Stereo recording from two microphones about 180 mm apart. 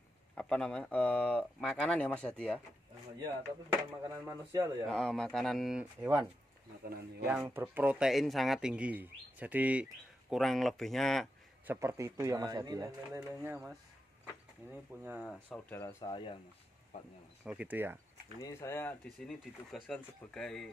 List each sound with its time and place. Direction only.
0.4 s speech: 5° left (ahead or behind)
4.0 s speech: 20° right (ahead or behind)
4.8 s speech: 5° left (ahead or behind)
5.9 s speech: 15° right (ahead or behind)
7.2 s speech: 10° right (ahead or behind)
11.6 s speech: 15° right (ahead or behind)
15.3 s speech: 5° left (ahead or behind)
15.8 s speech: 20° left (ahead or behind)
17.5 s speech: 10° right (ahead or behind)
18.4 s speech: 15° left (ahead or behind)
19.0 s speech: centre (ahead or behind)